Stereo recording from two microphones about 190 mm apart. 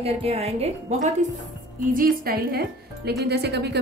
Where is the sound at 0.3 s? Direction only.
35° right (ahead or behind).